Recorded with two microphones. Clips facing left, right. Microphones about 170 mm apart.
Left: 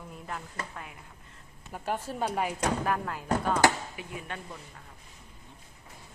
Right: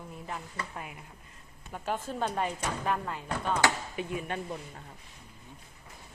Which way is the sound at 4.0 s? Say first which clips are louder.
Right 6 dB; 25° right (ahead or behind).